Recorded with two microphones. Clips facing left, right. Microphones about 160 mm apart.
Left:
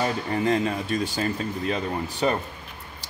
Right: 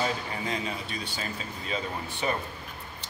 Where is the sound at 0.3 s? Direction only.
50° left (ahead or behind).